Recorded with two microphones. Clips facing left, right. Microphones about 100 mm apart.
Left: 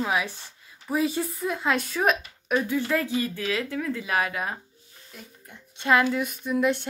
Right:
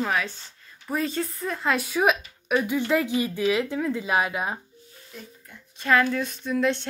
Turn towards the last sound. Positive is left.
turn(degrees=10)  # may be behind; listen again after turning